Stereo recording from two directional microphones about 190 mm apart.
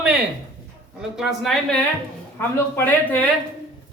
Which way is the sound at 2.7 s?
10° left (ahead or behind).